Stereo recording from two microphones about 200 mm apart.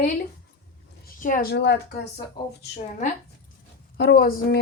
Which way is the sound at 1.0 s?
40° left (ahead or behind).